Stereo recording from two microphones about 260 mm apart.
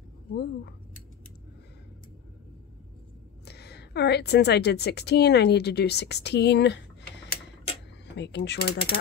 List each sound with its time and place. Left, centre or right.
0.3 s speech: left
3.4 s a woman's voice: left
8.2 s speech: left